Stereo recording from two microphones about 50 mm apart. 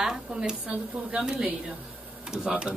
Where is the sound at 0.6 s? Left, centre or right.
Right.